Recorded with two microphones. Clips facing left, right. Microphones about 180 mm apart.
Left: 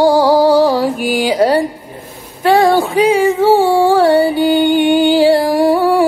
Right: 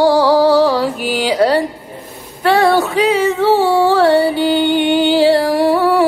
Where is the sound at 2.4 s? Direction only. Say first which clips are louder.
Left 2 dB; 10° left (ahead or behind).